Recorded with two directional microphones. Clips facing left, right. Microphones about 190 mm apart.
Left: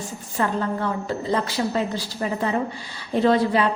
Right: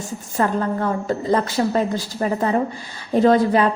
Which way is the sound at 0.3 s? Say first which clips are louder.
Right 3 dB; 45° right (ahead or behind).